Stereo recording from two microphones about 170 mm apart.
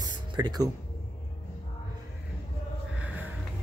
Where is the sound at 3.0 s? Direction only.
10° right (ahead or behind).